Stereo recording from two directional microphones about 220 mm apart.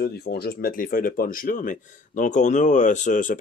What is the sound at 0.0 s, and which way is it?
Speech, 45° left (ahead or behind).